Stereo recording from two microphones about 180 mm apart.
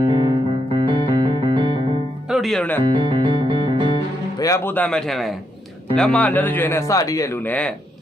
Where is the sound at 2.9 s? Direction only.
25° right (ahead or behind).